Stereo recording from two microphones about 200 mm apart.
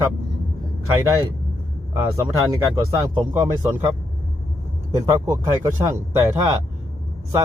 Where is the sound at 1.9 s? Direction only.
15° right (ahead or behind).